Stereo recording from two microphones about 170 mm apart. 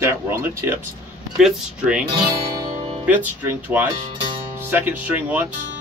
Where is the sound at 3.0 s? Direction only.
10° right (ahead or behind).